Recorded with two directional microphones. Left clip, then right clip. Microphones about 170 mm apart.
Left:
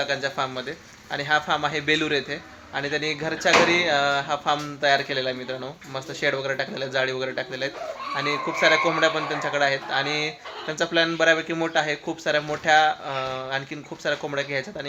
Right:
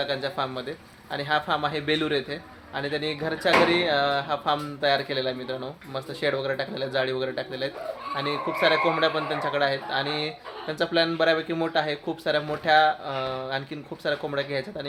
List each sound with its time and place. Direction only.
0.0 s speech: 5° left (ahead or behind)